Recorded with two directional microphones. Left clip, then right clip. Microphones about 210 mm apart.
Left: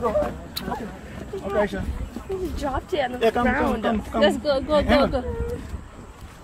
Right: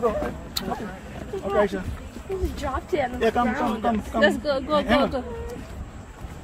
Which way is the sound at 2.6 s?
25° left (ahead or behind).